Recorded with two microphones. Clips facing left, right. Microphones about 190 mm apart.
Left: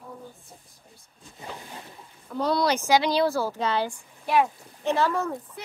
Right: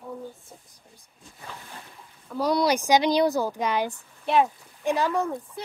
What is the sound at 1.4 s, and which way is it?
Boat, 20° left (ahead or behind).